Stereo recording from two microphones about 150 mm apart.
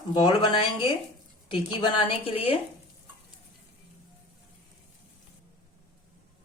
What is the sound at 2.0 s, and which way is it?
Speech, 40° left (ahead or behind).